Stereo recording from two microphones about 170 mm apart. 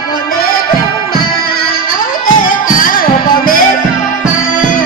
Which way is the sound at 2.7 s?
55° left (ahead or behind).